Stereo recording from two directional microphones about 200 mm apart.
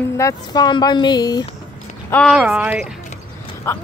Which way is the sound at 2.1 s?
Centre (ahead or behind).